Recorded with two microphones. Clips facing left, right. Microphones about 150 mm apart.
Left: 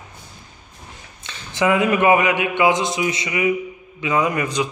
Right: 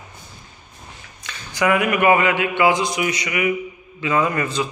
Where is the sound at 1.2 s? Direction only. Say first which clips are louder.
Left 1 dB; 25° left (ahead or behind).